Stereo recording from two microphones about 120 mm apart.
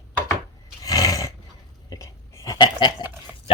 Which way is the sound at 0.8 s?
30° left (ahead or behind).